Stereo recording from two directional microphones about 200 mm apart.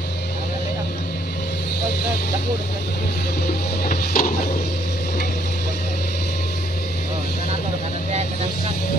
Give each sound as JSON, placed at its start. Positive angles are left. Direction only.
{"t": 3.4, "sound": "music", "side_deg": 45}